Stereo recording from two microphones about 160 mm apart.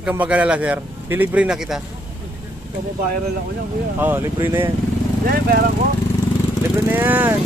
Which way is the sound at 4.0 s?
15° right (ahead or behind).